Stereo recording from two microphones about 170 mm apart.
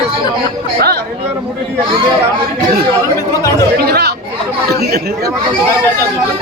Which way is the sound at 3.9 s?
75° right (ahead or behind).